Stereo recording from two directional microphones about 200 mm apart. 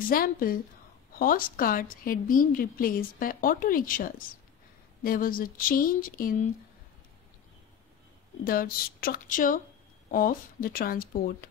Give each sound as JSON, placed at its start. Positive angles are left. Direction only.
{"t": 0.1, "sound": "a woman's voice", "side_deg": 45}
{"t": 8.5, "sound": "a woman's voice", "side_deg": 45}